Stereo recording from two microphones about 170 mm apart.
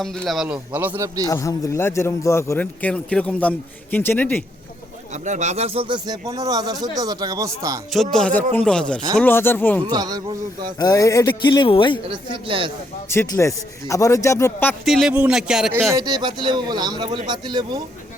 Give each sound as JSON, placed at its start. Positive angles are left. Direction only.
{"t": 0.0, "sound": "a man's voice", "side_deg": 0}
{"t": 1.3, "sound": "a man's voice", "side_deg": 20}
{"t": 5.1, "sound": "a man's voice", "side_deg": -45}
{"t": 7.9, "sound": "a man's voice", "side_deg": 5}
{"t": 9.8, "sound": "a man's voice", "side_deg": -25}
{"t": 10.8, "sound": "speech", "side_deg": 20}
{"t": 12.0, "sound": "a man's voice", "side_deg": -30}
{"t": 13.1, "sound": "a man's voice", "side_deg": 15}
{"t": 14.8, "sound": "speech", "side_deg": 0}
{"t": 15.9, "sound": "a man's voice", "side_deg": -20}